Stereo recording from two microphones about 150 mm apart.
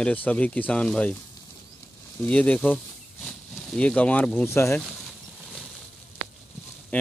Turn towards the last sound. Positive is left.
turn(degrees=10)  # may be behind; listen again after turning